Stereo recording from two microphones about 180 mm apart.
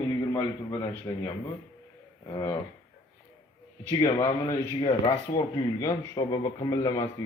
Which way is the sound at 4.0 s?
20° left (ahead or behind).